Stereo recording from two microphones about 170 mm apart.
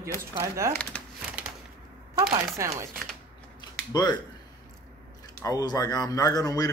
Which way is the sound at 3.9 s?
25° left (ahead or behind).